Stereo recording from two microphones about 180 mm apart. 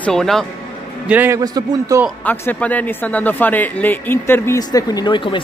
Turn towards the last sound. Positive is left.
turn(degrees=25)  # may be behind; listen again after turning